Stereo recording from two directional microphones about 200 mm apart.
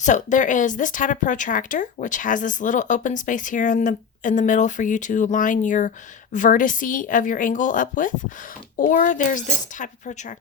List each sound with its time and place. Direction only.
0.0 s speech: 40° left (ahead or behind)